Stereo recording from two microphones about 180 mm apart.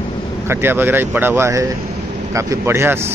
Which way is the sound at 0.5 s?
10° right (ahead or behind).